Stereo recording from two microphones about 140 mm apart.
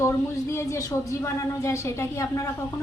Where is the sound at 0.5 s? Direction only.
20° left (ahead or behind).